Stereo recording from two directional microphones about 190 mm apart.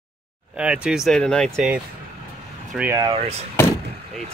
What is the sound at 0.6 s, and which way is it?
Speech, 5° right (ahead or behind).